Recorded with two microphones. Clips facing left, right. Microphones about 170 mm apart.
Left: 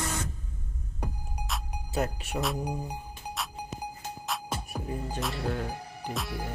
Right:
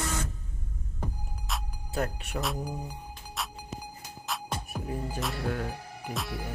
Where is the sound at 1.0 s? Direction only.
Centre (ahead or behind).